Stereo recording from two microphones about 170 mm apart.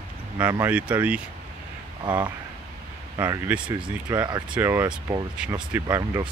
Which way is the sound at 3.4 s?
5° right (ahead or behind).